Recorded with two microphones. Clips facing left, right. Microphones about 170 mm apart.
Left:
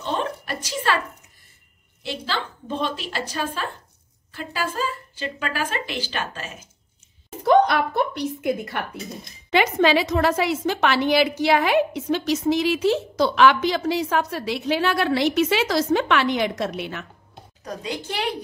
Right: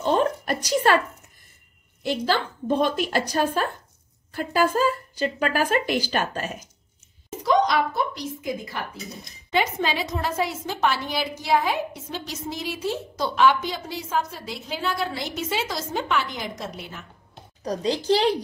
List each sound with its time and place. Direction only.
0.0 s a sound: 40° right (ahead or behind)
2.0 s a woman's voice: 45° right (ahead or behind)
7.4 s speech: 60° left (ahead or behind)
9.5 s a woman's voice: 80° left
17.6 s a woman's voice: 35° right (ahead or behind)